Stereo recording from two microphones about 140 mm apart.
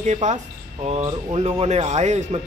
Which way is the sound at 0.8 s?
45° right (ahead or behind).